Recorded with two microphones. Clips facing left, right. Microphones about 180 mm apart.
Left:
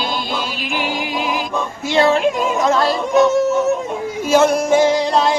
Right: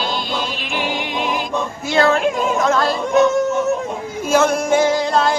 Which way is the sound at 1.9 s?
Centre (ahead or behind).